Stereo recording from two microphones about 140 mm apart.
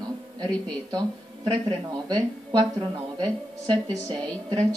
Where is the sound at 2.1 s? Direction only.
30° right (ahead or behind).